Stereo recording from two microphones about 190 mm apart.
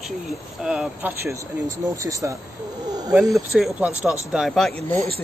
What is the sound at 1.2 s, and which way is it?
Speech, 15° right (ahead or behind).